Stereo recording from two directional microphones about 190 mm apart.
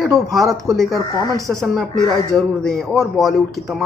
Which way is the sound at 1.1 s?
20° left (ahead or behind).